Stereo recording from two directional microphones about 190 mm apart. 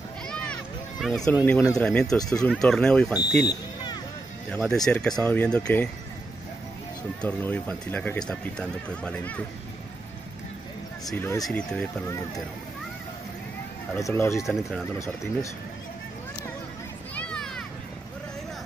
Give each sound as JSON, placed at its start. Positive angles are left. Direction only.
{"t": 1.0, "sound": "speech", "side_deg": 0}
{"t": 3.4, "sound": "speech", "side_deg": 20}
{"t": 4.5, "sound": "speech", "side_deg": 0}
{"t": 7.2, "sound": "speech", "side_deg": 5}
{"t": 11.1, "sound": "speech", "side_deg": 10}
{"t": 13.9, "sound": "speech", "side_deg": 15}
{"t": 14.4, "sound": "speech", "side_deg": 0}
{"t": 17.1, "sound": "children playing", "side_deg": 5}